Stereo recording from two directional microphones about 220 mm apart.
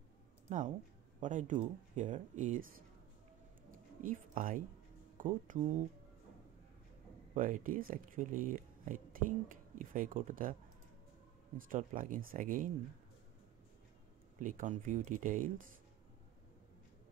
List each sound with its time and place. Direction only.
0.5 s speech: 35° right (ahead or behind)
4.0 s speech: 40° right (ahead or behind)
7.3 s speech: 40° right (ahead or behind)
11.5 s speech: 40° right (ahead or behind)
14.4 s speech: 35° right (ahead or behind)